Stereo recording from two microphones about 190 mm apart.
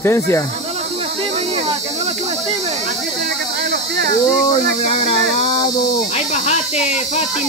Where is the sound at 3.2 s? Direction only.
65° right (ahead or behind).